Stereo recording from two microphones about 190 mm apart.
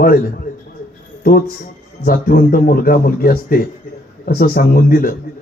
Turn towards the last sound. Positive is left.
turn(degrees=50)  # may be behind; listen again after turning